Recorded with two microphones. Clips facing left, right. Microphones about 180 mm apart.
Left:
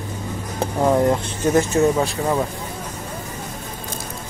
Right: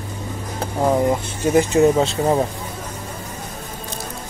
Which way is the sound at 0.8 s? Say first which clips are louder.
Even; 10° right (ahead or behind).